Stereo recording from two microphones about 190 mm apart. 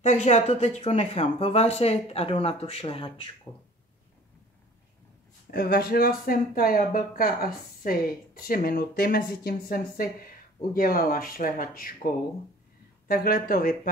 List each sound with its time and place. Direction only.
0.0 s speech: 35° left (ahead or behind)
5.5 s speech: 50° left (ahead or behind)
13.1 s speech: 50° left (ahead or behind)